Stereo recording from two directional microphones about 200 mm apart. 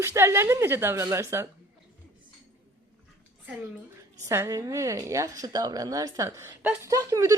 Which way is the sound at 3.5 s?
10° right (ahead or behind).